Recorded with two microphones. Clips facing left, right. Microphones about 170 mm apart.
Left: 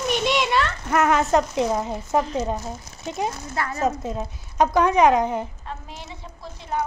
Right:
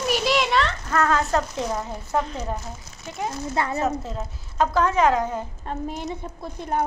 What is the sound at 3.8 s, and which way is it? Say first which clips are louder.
A child's voice: left 2 dB; 20° left (ahead or behind).